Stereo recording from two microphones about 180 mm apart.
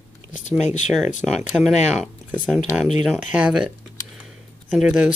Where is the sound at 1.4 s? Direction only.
5° right (ahead or behind).